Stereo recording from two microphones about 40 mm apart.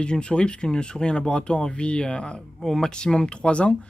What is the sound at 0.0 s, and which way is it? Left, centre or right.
Speech, left.